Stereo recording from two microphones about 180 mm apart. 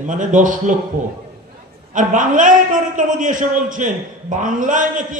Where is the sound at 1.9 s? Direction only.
45° right (ahead or behind).